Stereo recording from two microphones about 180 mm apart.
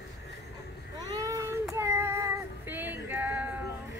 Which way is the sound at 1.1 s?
20° right (ahead or behind).